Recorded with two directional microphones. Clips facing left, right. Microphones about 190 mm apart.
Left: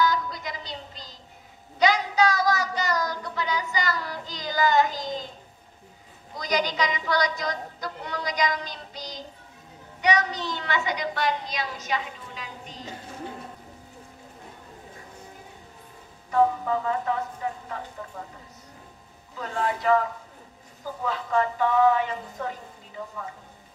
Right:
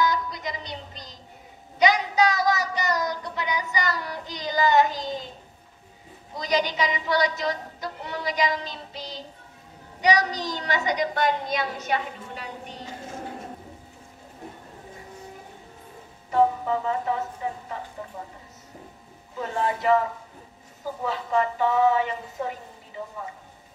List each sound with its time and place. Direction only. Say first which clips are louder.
0.0 s music: even; 20° right (ahead or behind)
1.8 s a sound: right 1 dB; 20° right (ahead or behind)
6.3 s a woman's voice: right 1 dB; 20° right (ahead or behind)
10.0 s a woman's voice: right 2 dB; 35° right (ahead or behind); by 12.0 s 55° right (ahead or behind)
16.3 s a woman's voice: right 1 dB; 20° right (ahead or behind)
19.3 s a woman's voice: right 1 dB; 20° right (ahead or behind)